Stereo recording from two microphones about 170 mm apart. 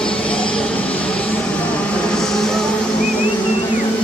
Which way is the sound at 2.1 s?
5° left (ahead or behind).